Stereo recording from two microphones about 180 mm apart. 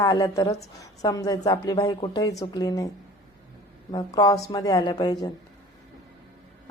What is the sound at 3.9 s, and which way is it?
Speech, 25° left (ahead or behind).